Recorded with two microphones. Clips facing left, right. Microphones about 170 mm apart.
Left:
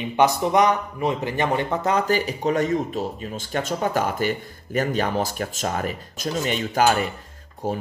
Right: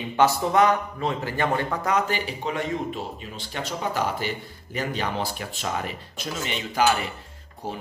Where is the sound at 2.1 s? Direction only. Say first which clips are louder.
Left 7 dB; 45° left (ahead or behind).